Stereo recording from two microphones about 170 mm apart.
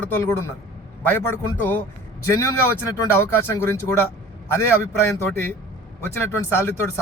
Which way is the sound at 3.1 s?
15° left (ahead or behind).